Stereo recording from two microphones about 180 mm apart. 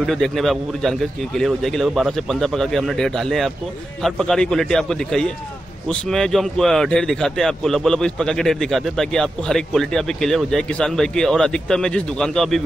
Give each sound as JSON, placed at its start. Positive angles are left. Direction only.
{"t": 0.0, "sound": "a man's voice", "side_deg": 0}